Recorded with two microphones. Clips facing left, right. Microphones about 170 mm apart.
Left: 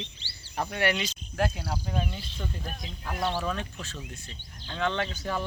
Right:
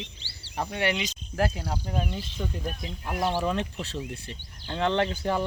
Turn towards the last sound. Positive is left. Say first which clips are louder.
# right 5 dB
turn(degrees=-20)  # may be behind; listen again after turning